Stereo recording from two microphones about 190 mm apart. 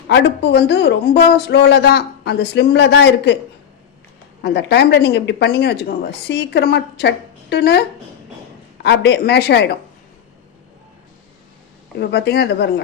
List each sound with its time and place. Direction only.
0.1 s speech: 65° left (ahead or behind)
4.4 s speech: 60° left (ahead or behind)
11.9 s speech: 60° left (ahead or behind)